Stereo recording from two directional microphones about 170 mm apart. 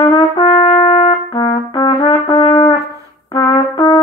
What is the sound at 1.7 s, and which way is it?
Brass instrument, 25° left (ahead or behind).